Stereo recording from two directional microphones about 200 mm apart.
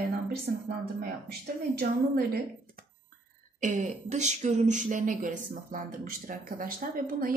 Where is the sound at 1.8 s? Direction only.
50° right (ahead or behind).